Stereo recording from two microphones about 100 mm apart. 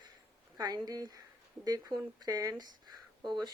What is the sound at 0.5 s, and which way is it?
Speech, 40° right (ahead or behind).